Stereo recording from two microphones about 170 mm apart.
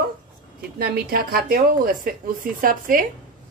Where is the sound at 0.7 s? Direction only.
65° right (ahead or behind).